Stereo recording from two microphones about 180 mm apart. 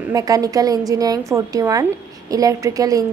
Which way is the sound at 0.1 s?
20° right (ahead or behind).